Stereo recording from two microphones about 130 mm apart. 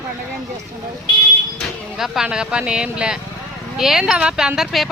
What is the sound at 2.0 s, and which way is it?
Speech, 5° right (ahead or behind).